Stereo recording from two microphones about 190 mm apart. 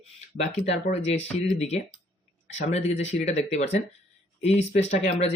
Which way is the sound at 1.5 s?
35° left (ahead or behind).